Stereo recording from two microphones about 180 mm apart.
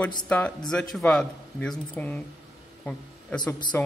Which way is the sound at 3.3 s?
25° left (ahead or behind).